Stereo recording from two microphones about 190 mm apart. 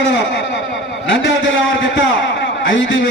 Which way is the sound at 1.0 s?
75° left (ahead or behind).